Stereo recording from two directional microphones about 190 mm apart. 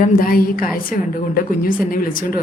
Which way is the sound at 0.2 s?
50° left (ahead or behind).